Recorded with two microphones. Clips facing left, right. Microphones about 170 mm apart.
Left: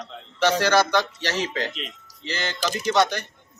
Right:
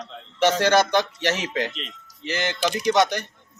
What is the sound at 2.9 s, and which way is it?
Speech, 15° right (ahead or behind).